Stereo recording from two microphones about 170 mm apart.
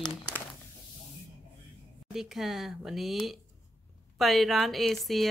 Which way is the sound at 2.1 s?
Centre (ahead or behind).